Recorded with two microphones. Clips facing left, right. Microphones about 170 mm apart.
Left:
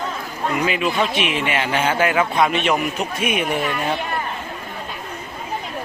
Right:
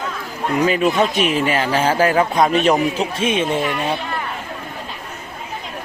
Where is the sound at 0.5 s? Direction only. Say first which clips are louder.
Right 5 dB; 40° right (ahead or behind).